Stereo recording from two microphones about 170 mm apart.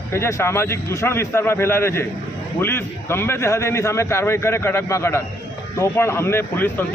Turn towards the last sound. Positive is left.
turn(degrees=15)  # may be behind; listen again after turning